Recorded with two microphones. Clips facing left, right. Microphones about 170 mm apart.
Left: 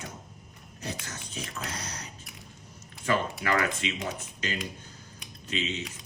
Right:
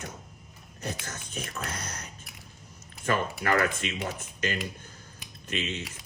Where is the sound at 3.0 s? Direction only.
50° right (ahead or behind).